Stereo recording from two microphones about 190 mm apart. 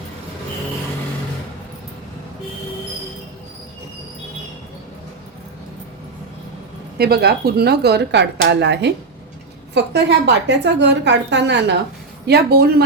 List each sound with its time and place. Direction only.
7.0 s a woman's voice: 55° right (ahead or behind)